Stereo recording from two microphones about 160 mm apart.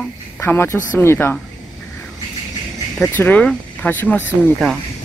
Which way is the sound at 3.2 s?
10° left (ahead or behind).